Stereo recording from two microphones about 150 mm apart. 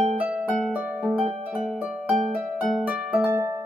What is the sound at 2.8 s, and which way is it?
Harp, 10° right (ahead or behind).